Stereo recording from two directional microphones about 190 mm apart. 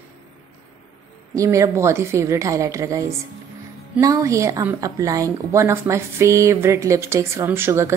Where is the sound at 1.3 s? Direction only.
15° right (ahead or behind).